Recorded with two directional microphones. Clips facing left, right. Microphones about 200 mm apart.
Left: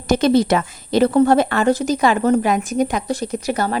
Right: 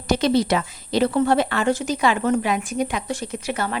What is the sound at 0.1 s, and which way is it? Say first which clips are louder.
A woman's voice: left 4 dB; 50° left (ahead or behind).